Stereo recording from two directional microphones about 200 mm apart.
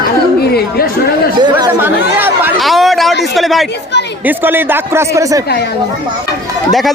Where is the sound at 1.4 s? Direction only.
20° right (ahead or behind).